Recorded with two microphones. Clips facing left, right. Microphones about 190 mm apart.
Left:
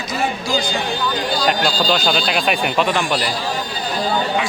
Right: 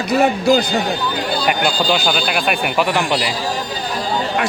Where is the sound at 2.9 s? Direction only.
15° right (ahead or behind).